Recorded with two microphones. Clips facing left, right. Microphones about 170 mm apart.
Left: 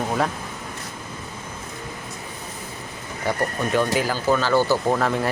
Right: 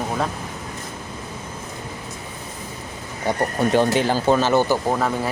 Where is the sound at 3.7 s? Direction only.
30° right (ahead or behind).